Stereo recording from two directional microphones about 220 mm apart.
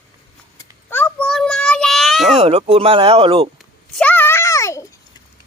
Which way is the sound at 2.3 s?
25° right (ahead or behind).